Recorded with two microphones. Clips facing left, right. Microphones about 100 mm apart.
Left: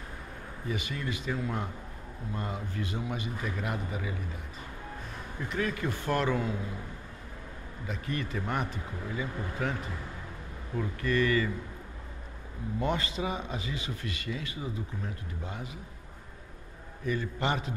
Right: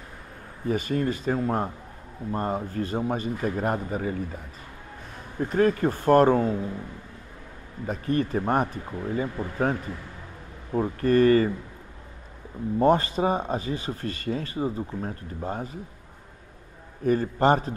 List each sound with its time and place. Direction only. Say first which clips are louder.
0.7 s speech: right 10 dB; 45° right (ahead or behind)
5.4 s speech: right 10 dB; 45° right (ahead or behind)
7.8 s speech: right 9 dB; 40° right (ahead or behind)
12.7 s speech: right 10 dB; 45° right (ahead or behind)
17.0 s speech: right 10 dB; 45° right (ahead or behind)